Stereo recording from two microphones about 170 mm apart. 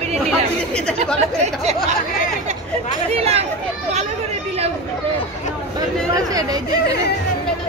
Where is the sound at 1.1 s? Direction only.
40° right (ahead or behind).